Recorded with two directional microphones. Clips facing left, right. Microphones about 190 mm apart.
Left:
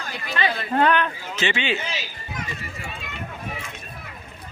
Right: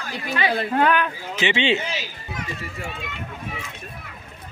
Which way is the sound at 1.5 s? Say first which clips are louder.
Right 5 dB; 25° right (ahead or behind).